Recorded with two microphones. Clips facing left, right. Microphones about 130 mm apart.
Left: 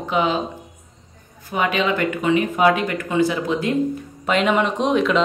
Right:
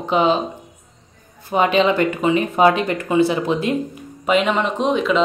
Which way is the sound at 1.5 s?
25° right (ahead or behind).